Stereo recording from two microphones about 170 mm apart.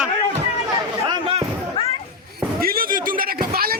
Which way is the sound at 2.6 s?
60° right (ahead or behind).